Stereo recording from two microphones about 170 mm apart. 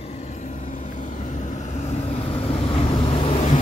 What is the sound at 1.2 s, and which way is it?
Vehicle, 45° left (ahead or behind).